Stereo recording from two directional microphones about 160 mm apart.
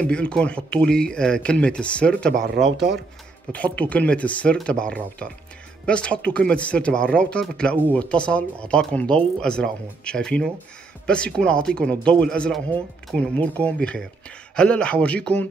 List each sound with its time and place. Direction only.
0.0 s speech: 5° left (ahead or behind)
2.4 s a man's voice: 90° right
3.5 s speech: 10° left (ahead or behind)